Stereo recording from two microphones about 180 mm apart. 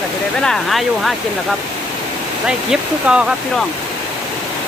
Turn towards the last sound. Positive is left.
turn(degrees=-5)  # may be behind; listen again after turning